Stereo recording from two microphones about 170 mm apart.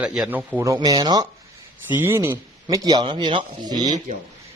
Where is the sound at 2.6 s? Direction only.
25° right (ahead or behind).